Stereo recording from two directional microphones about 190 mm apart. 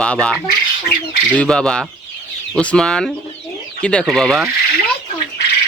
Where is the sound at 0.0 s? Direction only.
5° left (ahead or behind).